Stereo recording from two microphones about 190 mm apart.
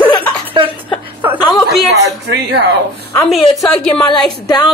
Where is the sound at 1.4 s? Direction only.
25° left (ahead or behind).